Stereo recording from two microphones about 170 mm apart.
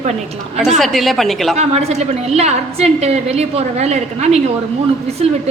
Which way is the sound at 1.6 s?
40° right (ahead or behind).